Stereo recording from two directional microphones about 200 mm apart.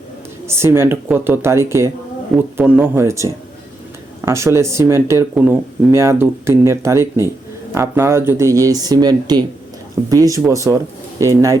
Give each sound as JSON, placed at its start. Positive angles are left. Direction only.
{"t": 0.4, "sound": "speech", "side_deg": -15}